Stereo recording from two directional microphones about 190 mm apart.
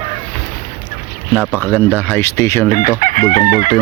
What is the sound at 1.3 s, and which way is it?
Speech, 10° left (ahead or behind).